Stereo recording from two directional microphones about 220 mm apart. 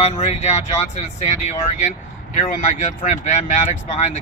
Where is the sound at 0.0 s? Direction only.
30° left (ahead or behind).